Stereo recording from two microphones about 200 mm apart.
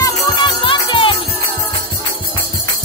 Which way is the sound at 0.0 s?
25° left (ahead or behind).